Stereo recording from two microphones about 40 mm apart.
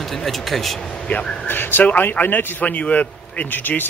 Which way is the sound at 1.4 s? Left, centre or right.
Left.